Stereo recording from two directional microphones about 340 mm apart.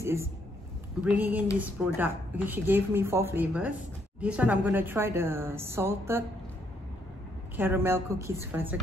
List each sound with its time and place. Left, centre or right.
0.0 s a woman's voice: centre
7.5 s a woman's voice: centre